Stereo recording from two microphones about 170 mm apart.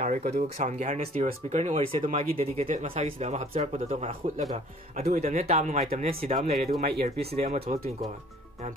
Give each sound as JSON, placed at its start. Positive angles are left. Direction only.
{"t": 0.0, "sound": "speech", "side_deg": -45}
{"t": 6.8, "sound": "speech", "side_deg": -70}
{"t": 7.4, "sound": "speech", "side_deg": -35}